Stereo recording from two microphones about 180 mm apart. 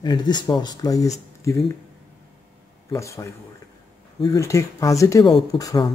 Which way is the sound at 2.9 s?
15° left (ahead or behind).